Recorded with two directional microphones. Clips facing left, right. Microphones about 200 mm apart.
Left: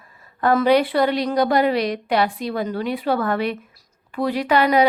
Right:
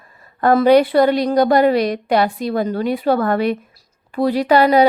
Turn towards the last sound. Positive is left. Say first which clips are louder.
# right 4 dB
turn(degrees=-35)  # may be behind; listen again after turning